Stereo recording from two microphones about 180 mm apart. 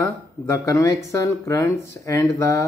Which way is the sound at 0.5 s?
20° left (ahead or behind).